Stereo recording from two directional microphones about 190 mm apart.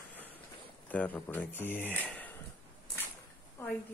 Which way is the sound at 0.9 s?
10° left (ahead or behind).